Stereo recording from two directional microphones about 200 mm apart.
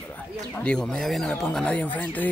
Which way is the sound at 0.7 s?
5° left (ahead or behind).